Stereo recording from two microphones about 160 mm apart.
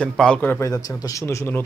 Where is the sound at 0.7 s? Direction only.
20° left (ahead or behind).